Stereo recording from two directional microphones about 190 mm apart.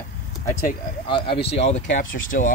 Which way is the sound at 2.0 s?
90° left.